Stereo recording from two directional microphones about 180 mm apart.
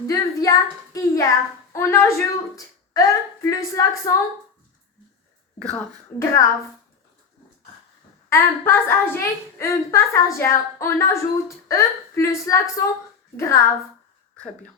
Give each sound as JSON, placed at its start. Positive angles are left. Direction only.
{"t": 0.1, "sound": "a woman's voice", "side_deg": 20}
{"t": 5.5, "sound": "a woman's voice", "side_deg": 10}
{"t": 8.3, "sound": "a woman's voice", "side_deg": 10}